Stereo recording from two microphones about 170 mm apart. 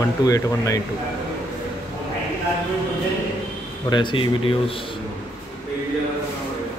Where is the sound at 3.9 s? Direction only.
25° left (ahead or behind).